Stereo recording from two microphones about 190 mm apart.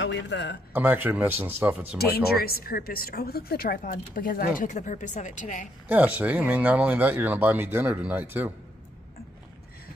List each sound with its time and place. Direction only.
0.0 s speech: 70° left (ahead or behind)
0.7 s speech: 10° right (ahead or behind)
2.0 s a woman's voice: 55° left (ahead or behind)
5.9 s speech: 10° right (ahead or behind)